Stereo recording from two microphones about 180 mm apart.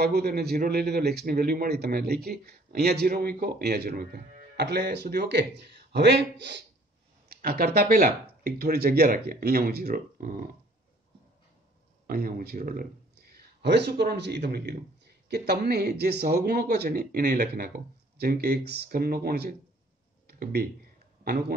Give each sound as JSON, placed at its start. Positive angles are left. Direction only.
{"t": 0.0, "sound": "a man's voice", "side_deg": -60}
{"t": 7.2, "sound": "a man's voice", "side_deg": -55}
{"t": 12.1, "sound": "speech", "side_deg": -55}
{"t": 13.2, "sound": "a man's voice", "side_deg": -65}
{"t": 20.2, "sound": "a sound", "side_deg": -60}
{"t": 21.2, "sound": "speech", "side_deg": -55}